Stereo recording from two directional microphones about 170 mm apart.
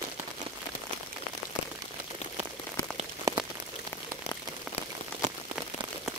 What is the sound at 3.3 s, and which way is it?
Rain on surface, 20° right (ahead or behind).